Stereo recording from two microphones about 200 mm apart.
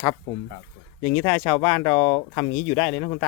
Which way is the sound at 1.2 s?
25° left (ahead or behind).